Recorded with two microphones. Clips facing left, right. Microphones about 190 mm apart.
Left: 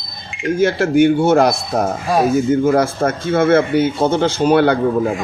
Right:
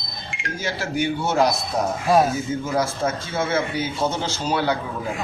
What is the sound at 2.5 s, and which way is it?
Speech, 55° left (ahead or behind).